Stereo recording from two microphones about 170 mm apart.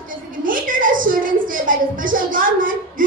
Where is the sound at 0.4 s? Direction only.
55° right (ahead or behind).